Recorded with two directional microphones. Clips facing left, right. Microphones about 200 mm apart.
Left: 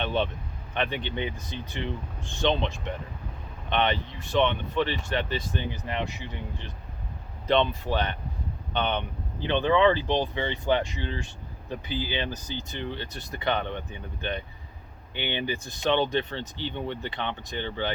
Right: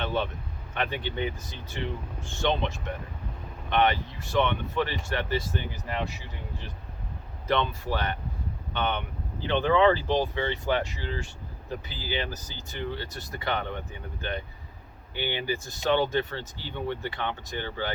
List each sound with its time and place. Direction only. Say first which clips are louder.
0.0 s speech: left 2 dB; 20° left (ahead or behind)
7.4 s speech: left 3 dB; 20° left (ahead or behind)